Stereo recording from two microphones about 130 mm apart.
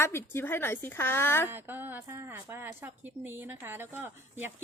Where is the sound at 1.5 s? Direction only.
15° right (ahead or behind).